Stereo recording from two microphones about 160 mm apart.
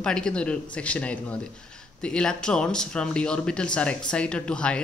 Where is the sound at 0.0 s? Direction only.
5° left (ahead or behind).